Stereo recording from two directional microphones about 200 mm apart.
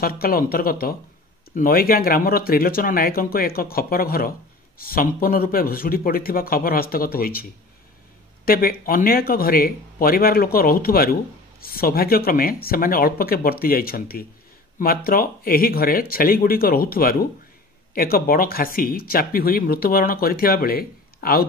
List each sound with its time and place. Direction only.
0.0 s speech: 45° left (ahead or behind)
8.5 s speech: 45° left (ahead or behind)